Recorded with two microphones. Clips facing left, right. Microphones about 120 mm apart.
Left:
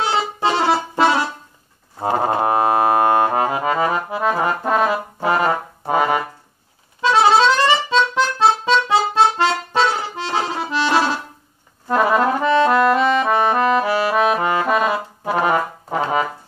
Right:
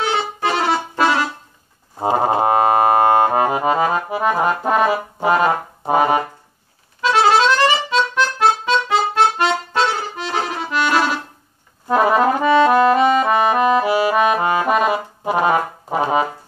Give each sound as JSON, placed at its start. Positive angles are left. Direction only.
{"t": 0.0, "sound": "music", "side_deg": 30}
{"t": 2.0, "sound": "music", "side_deg": -20}
{"t": 3.3, "sound": "accordion", "side_deg": -20}
{"t": 7.0, "sound": "accordion", "side_deg": 25}
{"t": 11.9, "sound": "brass instrument", "side_deg": -20}